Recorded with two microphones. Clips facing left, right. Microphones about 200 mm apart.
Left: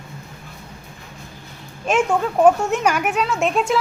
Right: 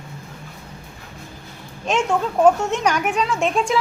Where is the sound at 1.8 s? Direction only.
5° left (ahead or behind).